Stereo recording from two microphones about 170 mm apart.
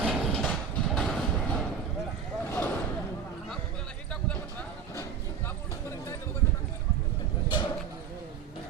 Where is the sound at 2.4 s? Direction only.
10° left (ahead or behind).